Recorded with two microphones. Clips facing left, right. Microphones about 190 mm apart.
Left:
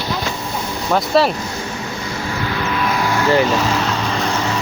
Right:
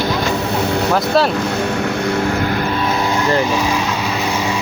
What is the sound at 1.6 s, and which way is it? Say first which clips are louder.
Music: right 8 dB; 65° right (ahead or behind).